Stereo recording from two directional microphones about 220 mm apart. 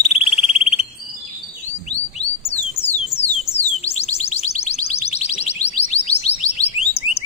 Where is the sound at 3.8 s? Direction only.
30° left (ahead or behind).